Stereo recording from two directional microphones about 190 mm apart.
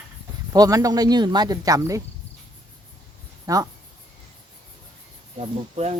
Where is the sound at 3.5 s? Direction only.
15° right (ahead or behind).